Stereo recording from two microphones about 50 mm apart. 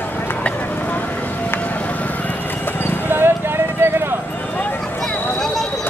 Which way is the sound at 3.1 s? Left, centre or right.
Right.